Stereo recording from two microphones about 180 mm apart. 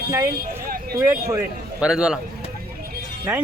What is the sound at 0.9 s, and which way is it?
Speech, 15° right (ahead or behind).